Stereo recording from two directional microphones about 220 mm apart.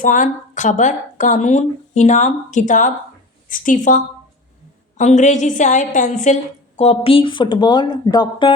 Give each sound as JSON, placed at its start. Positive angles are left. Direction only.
{"t": 0.0, "sound": "a woman's voice", "side_deg": 35}